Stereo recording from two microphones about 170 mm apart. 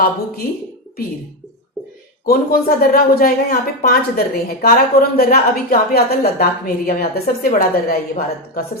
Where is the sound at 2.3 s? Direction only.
60° left (ahead or behind).